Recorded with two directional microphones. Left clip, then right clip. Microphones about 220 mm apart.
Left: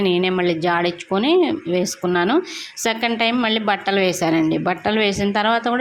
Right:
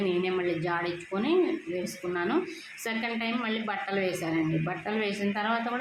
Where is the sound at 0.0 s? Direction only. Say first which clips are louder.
Left 10 dB; 40° left (ahead or behind).